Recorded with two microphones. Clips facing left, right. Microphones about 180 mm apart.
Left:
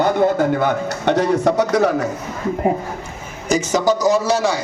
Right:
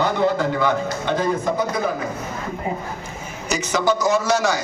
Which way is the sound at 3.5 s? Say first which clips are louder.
Left 4 dB; 45° left (ahead or behind).